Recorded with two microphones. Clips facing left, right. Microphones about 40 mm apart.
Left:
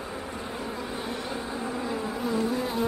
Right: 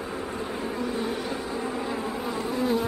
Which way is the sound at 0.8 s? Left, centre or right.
Centre.